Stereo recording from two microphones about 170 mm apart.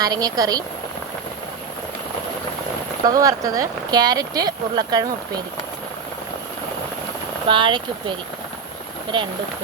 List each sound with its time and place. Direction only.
0.0 s speech: 20° right (ahead or behind)
3.1 s speech: 20° right (ahead or behind)
7.4 s speech: 30° right (ahead or behind)